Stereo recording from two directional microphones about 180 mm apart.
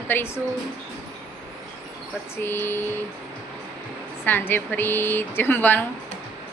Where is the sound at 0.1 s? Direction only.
10° left (ahead or behind).